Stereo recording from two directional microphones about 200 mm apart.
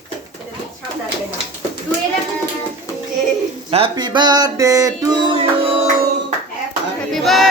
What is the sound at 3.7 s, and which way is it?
Music, 25° right (ahead or behind).